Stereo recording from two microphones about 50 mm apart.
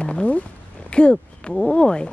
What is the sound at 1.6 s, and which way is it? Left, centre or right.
Speech, centre.